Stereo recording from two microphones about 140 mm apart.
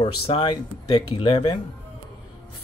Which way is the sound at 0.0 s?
35° left (ahead or behind).